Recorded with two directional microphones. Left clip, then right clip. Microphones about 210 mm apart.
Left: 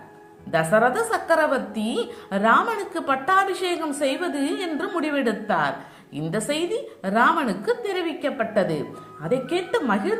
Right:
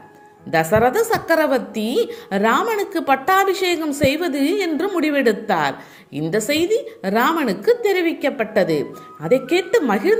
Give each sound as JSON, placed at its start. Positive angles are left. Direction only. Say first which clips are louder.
{"t": 0.5, "sound": "a woman's voice", "louder": "right 3 dB", "side_deg": -30}